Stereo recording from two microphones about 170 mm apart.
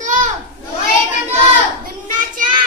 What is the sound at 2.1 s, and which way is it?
Speech, 50° right (ahead or behind).